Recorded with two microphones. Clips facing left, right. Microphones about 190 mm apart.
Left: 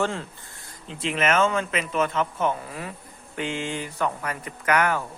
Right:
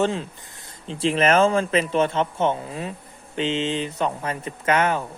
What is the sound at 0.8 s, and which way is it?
A man's voice, 30° right (ahead or behind).